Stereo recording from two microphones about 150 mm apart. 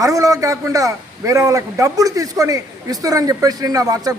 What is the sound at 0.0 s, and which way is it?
A man's voice, 20° right (ahead or behind).